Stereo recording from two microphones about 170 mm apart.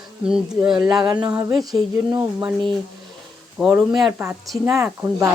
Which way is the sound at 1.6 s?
20° right (ahead or behind).